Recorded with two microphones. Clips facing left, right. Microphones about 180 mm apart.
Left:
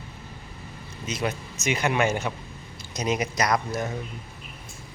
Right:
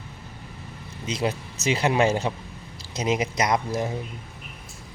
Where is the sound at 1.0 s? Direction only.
30° right (ahead or behind).